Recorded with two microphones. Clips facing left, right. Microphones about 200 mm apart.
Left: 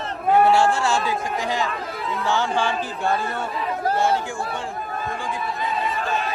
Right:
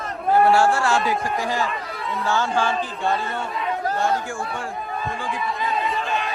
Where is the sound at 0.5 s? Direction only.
20° left (ahead or behind).